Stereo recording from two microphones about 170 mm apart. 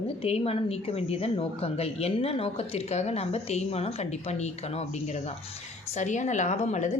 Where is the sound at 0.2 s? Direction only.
35° left (ahead or behind).